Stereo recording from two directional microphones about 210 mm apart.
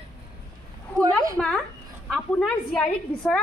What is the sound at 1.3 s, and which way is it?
A woman's voice, 5° left (ahead or behind).